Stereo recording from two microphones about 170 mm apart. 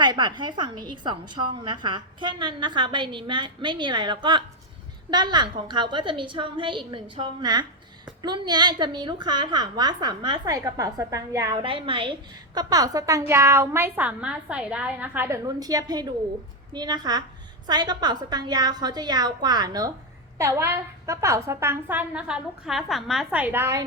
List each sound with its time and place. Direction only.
0.0 s a woman's voice: 25° right (ahead or behind)